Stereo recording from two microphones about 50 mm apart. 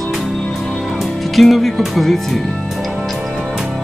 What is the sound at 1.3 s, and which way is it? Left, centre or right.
Speech, centre.